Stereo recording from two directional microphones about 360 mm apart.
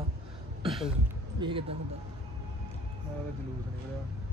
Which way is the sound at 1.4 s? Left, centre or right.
Centre.